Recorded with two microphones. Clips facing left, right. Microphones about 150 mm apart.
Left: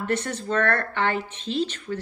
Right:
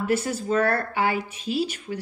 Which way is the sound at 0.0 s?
10° right (ahead or behind).